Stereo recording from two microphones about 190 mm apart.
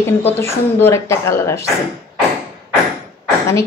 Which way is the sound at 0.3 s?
10° left (ahead or behind).